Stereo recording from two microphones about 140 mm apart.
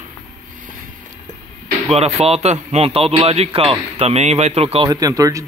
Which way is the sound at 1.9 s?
50° right (ahead or behind).